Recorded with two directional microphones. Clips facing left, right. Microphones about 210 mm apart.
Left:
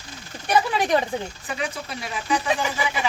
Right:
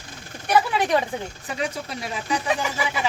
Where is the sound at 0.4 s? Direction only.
5° right (ahead or behind).